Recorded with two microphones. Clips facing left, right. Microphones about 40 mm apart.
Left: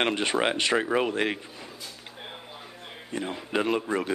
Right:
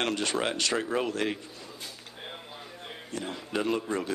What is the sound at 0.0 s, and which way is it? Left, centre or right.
Speech, left.